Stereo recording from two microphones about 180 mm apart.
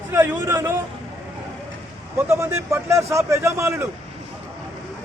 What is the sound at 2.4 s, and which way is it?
A man's voice, 15° right (ahead or behind).